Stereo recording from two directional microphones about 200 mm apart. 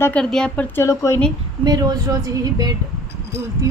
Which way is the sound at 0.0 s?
5° left (ahead or behind).